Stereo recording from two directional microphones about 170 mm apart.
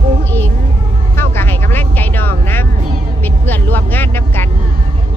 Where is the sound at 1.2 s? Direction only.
15° left (ahead or behind).